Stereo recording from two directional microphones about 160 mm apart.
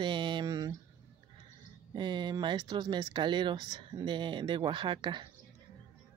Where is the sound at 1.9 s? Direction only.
30° right (ahead or behind).